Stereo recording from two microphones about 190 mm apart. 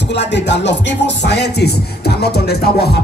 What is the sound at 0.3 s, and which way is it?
Music, 70° left (ahead or behind).